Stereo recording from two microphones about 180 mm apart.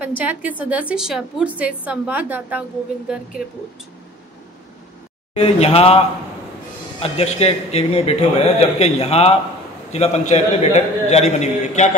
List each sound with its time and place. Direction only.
0.0 s a woman's voice: 10° right (ahead or behind)
5.3 s a man's voice: 35° left (ahead or behind)